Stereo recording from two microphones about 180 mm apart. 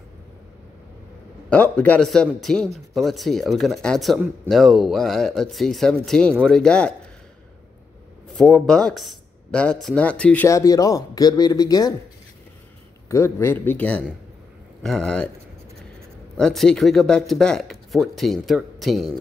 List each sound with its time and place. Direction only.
1.5 s speech: 5° left (ahead or behind)
8.3 s speech: 5° left (ahead or behind); by 11.9 s 20° left (ahead or behind)
13.1 s speech: 15° left (ahead or behind)
16.3 s speech: 5° left (ahead or behind)